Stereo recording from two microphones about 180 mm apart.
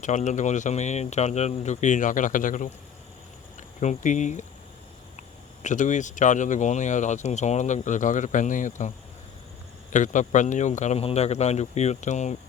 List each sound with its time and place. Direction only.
0.0 s speech: 45° left (ahead or behind)
5.6 s speech: 45° left (ahead or behind)
9.9 s speech: 45° left (ahead or behind)